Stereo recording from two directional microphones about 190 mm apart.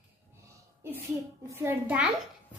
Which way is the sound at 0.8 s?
10° right (ahead or behind).